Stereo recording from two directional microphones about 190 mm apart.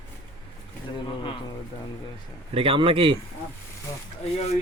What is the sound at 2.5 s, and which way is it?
Speech, 30° right (ahead or behind).